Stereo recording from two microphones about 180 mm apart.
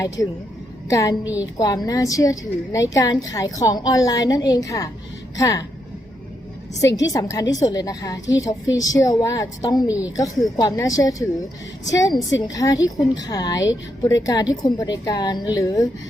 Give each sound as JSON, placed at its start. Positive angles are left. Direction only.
{"t": 0.2, "sound": "a woman's voice", "side_deg": 15}
{"t": 1.2, "sound": "a woman's voice", "side_deg": -10}
{"t": 1.5, "sound": "a woman's voice", "side_deg": 25}
{"t": 6.7, "sound": "a woman's voice", "side_deg": 20}